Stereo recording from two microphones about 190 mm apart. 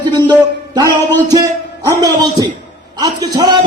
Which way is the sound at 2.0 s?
20° right (ahead or behind).